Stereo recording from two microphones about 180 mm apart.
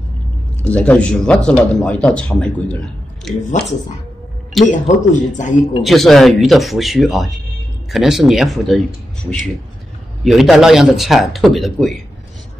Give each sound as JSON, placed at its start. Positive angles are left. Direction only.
{"t": 0.6, "sound": "a man's voice", "side_deg": 5}
{"t": 4.6, "sound": "speech", "side_deg": 45}
{"t": 5.9, "sound": "a man's voice", "side_deg": 0}
{"t": 10.2, "sound": "a man's voice", "side_deg": 0}